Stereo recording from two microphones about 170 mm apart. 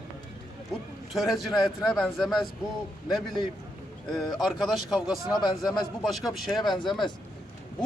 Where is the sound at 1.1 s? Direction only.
Centre (ahead or behind).